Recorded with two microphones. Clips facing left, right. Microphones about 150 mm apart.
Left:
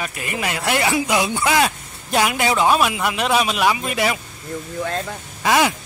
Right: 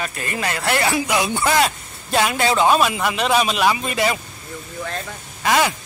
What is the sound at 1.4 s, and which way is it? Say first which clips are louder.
A man's voice: even; 10° left (ahead or behind).